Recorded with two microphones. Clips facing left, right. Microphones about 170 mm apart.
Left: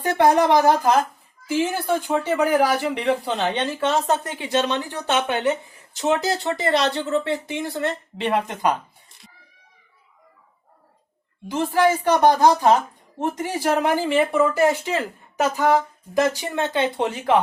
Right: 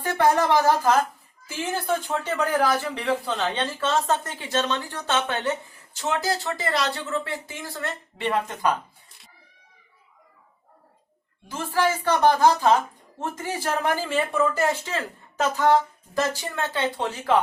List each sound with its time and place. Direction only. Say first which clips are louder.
0.0 s speech: left 4 dB; 15° left (ahead or behind)
11.4 s speech: left 5 dB; 15° left (ahead or behind)